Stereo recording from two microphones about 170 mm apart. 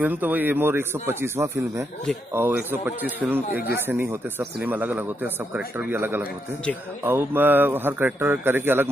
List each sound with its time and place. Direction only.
0.0 s speech: 10° right (ahead or behind)
3.4 s speech: 60° left (ahead or behind)
3.7 s speech: 10° right (ahead or behind)